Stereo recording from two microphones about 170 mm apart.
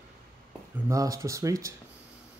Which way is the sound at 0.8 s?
20° right (ahead or behind).